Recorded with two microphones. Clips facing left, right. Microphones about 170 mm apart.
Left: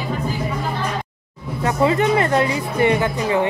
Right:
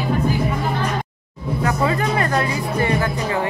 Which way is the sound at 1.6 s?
25° left (ahead or behind).